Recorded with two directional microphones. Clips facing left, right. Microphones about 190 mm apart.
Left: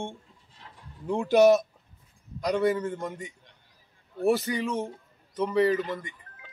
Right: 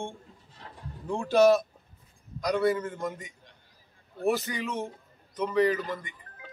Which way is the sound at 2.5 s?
15° left (ahead or behind).